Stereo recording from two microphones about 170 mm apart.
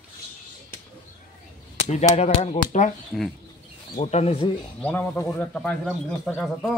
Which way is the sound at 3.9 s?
40° left (ahead or behind).